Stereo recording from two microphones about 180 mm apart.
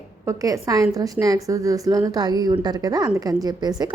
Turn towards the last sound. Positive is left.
turn(degrees=-20)  # may be behind; listen again after turning